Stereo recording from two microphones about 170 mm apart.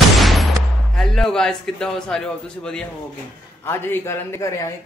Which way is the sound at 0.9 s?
Centre (ahead or behind).